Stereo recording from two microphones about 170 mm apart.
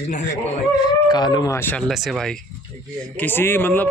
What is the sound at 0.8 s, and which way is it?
Speech, 25° left (ahead or behind).